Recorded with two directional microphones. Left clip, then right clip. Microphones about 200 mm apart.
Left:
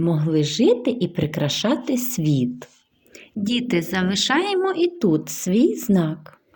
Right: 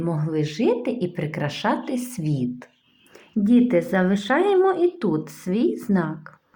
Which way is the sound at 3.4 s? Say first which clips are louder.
Right 4 dB; 30° left (ahead or behind).